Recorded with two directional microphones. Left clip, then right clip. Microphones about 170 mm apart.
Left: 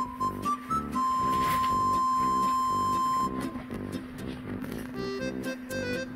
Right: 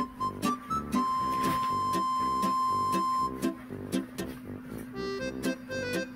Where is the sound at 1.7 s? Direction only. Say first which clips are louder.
Left 3 dB; 15° left (ahead or behind).